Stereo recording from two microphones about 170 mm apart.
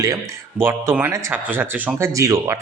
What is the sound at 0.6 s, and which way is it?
A man's voice, 15° right (ahead or behind).